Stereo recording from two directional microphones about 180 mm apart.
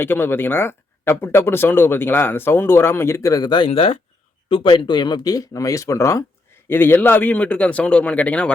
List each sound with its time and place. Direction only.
0.0 s speech: 10° left (ahead or behind)